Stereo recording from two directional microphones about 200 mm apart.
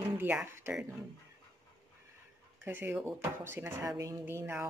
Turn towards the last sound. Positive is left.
turn(degrees=-10)  # may be behind; listen again after turning